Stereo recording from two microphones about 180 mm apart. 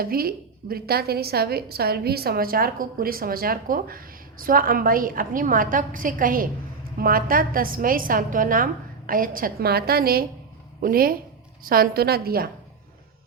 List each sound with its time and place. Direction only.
0.0 s a woman's voice: 55° right (ahead or behind)